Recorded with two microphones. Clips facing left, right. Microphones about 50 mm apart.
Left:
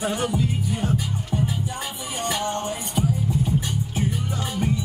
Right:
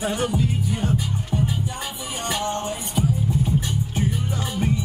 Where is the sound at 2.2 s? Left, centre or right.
Right.